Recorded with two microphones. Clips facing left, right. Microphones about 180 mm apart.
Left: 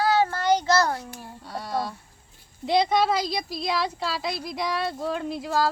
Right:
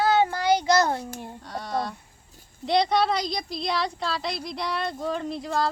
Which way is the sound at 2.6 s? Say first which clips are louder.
Left 1 dB; 5° left (ahead or behind).